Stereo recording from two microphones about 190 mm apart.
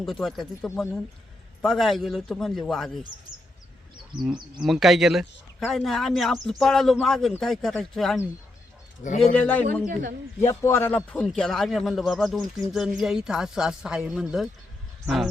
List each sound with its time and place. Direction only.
0.0 s a man's voice: centre (ahead or behind)
4.6 s a man's voice: centre (ahead or behind)
9.0 s speech: 40° left (ahead or behind)
9.9 s speech: 45° right (ahead or behind)
10.4 s a man's voice: 15° left (ahead or behind)